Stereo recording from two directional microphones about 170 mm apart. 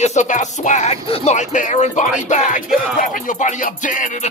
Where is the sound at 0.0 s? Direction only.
45° left (ahead or behind).